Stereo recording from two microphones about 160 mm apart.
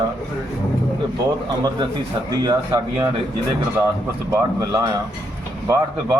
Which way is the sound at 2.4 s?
25° right (ahead or behind).